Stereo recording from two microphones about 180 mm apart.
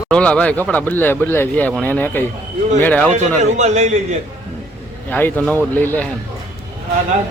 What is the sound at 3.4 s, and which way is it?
Speech, 40° right (ahead or behind).